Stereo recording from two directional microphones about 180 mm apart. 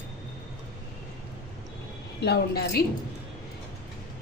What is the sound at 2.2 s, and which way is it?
Speech, 65° left (ahead or behind).